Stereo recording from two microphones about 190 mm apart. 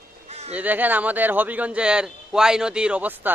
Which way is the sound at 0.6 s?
10° right (ahead or behind).